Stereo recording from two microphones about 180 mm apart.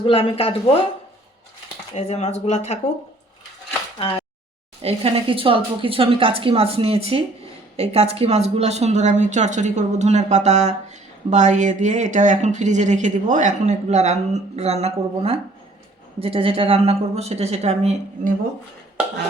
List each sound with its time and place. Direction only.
0.0 s speech: 30° left (ahead or behind)
2.0 s speech: 40° left (ahead or behind)
4.8 s a woman's voice: 35° right (ahead or behind)